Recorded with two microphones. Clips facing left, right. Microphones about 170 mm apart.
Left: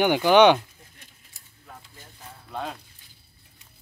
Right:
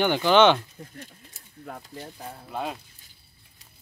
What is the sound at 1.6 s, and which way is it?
Speech, 50° right (ahead or behind).